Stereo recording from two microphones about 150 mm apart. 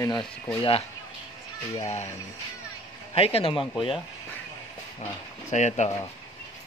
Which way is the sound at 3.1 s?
40° left (ahead or behind).